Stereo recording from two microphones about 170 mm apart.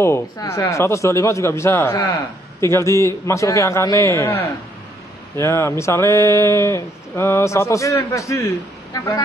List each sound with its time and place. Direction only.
0.0 s speech: 15° left (ahead or behind)